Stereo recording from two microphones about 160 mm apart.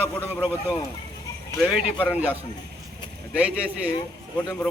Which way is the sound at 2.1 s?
10° right (ahead or behind).